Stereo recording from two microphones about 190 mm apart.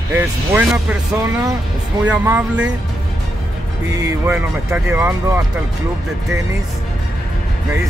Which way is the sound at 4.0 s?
15° right (ahead or behind).